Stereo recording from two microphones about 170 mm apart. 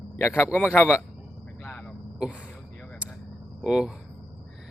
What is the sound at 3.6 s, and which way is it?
Speech, 5° right (ahead or behind).